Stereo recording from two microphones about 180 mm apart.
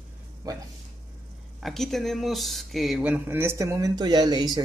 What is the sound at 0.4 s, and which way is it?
Speech, 20° right (ahead or behind).